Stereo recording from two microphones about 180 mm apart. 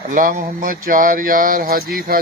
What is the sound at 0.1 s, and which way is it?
Speech, 50° right (ahead or behind).